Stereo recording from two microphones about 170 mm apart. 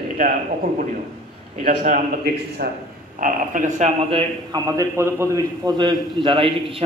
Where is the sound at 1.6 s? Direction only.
50° right (ahead or behind).